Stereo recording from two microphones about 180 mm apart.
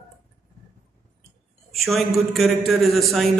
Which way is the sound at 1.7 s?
Centre (ahead or behind).